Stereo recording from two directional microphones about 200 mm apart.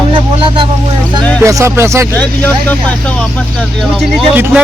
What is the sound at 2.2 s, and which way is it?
Speech, 10° left (ahead or behind).